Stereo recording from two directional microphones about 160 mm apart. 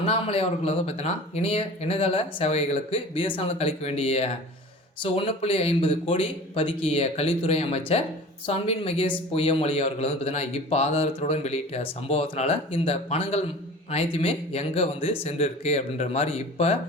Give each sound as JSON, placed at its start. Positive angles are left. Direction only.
{"t": 0.0, "sound": "speech", "side_deg": 40}